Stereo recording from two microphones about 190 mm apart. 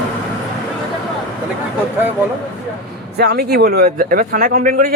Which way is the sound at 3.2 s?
55° right (ahead or behind).